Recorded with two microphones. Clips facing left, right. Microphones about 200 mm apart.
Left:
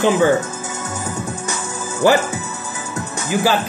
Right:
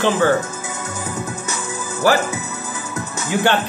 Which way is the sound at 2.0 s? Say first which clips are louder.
Left 2 dB; 20° left (ahead or behind).